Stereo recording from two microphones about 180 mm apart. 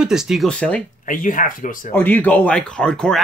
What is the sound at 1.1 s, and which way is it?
Speech, 50° left (ahead or behind).